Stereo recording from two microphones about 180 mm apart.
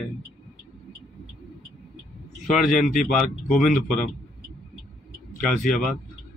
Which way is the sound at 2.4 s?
Centre (ahead or behind).